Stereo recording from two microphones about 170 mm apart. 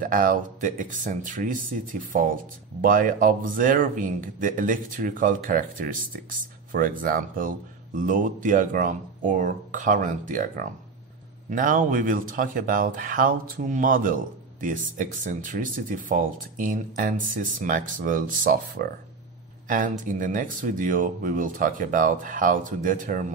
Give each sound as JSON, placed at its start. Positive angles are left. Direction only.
{"t": 0.0, "sound": "speech", "side_deg": -55}